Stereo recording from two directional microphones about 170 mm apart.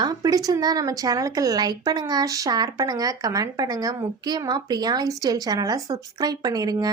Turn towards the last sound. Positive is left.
turn(degrees=-20)  # may be behind; listen again after turning